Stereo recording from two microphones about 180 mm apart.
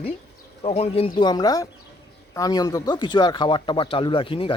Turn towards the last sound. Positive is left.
turn(degrees=30)  # may be behind; listen again after turning